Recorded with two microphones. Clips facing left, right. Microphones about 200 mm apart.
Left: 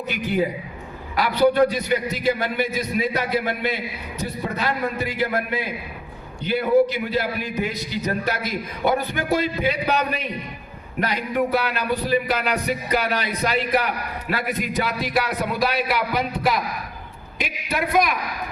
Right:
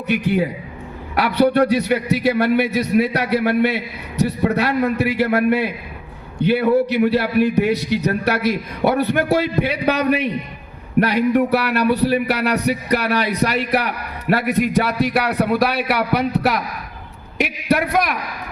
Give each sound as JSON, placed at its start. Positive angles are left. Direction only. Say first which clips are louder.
{"t": 0.1, "sound": "a man's voice", "louder": "right 5 dB", "side_deg": -65}